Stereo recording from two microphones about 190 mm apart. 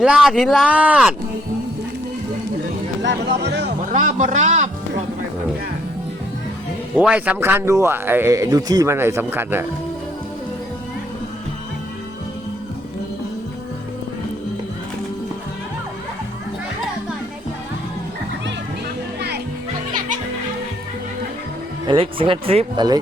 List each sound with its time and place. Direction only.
0.0 s speech: 5° right (ahead or behind)
3.0 s speech: 65° right (ahead or behind)
3.9 s a sound: 40° right (ahead or behind)
6.9 s a man's voice: 5° right (ahead or behind)
21.8 s speech: 30° right (ahead or behind)